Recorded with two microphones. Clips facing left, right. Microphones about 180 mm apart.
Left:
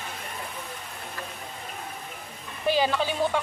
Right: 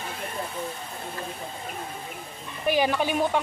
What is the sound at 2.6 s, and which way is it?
Speech, 15° right (ahead or behind).